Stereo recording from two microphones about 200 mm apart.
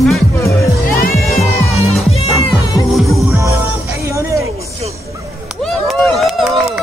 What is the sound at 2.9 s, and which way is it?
Music, centre (ahead or behind).